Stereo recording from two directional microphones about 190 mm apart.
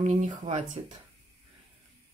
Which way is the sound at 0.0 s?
40° right (ahead or behind).